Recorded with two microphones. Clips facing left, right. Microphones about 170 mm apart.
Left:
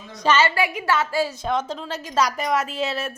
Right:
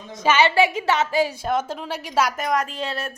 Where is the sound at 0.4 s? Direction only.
25° right (ahead or behind).